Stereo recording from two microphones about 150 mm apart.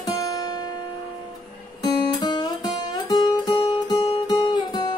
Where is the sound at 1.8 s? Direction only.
30° left (ahead or behind).